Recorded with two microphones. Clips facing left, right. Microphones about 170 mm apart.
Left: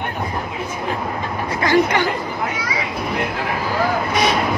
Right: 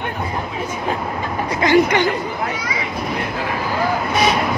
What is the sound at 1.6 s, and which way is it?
Speech, 20° right (ahead or behind).